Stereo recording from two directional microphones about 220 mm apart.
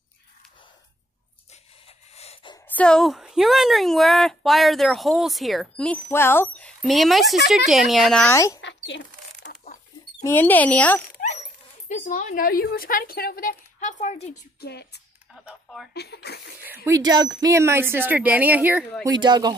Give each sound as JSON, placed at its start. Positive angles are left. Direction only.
{"t": 1.5, "sound": "a sound", "side_deg": 30}
{"t": 2.7, "sound": "a woman's voice", "side_deg": 5}
{"t": 8.5, "sound": "bird", "side_deg": 55}
{"t": 10.2, "sound": "speech", "side_deg": 10}
{"t": 11.9, "sound": "speech", "side_deg": 35}
{"t": 14.6, "sound": "speech", "side_deg": 50}
{"t": 15.3, "sound": "a sound", "side_deg": 0}
{"t": 15.9, "sound": "speech", "side_deg": 50}
{"t": 16.6, "sound": "speech", "side_deg": -15}
{"t": 19.0, "sound": "speech", "side_deg": -20}